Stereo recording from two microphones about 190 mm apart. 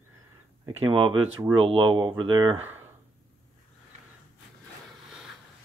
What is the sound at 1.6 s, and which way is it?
Speech, 25° right (ahead or behind).